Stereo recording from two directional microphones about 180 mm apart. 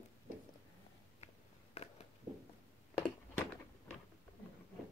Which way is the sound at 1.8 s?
35° left (ahead or behind).